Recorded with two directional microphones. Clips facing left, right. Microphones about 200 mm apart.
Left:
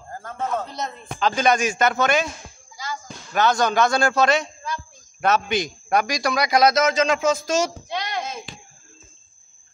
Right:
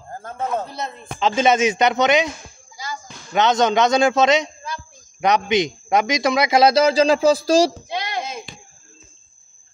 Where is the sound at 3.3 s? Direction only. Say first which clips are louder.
Right 3 dB; 20° right (ahead or behind).